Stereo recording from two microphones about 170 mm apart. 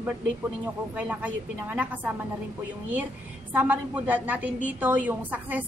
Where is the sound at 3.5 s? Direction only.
10° right (ahead or behind).